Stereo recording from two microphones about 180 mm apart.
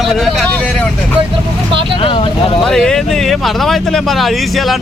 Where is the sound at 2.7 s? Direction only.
5° left (ahead or behind).